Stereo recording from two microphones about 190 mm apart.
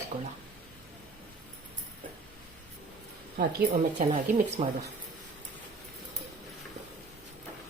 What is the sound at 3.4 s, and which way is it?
Speech, 55° right (ahead or behind).